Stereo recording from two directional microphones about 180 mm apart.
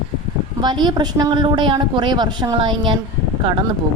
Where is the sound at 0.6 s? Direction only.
25° right (ahead or behind).